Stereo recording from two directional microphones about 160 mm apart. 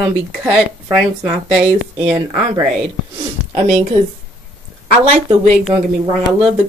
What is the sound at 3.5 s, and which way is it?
Speech, 45° right (ahead or behind).